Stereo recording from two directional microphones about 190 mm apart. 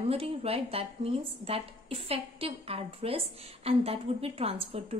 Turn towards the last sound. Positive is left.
turn(degrees=-30)  # may be behind; listen again after turning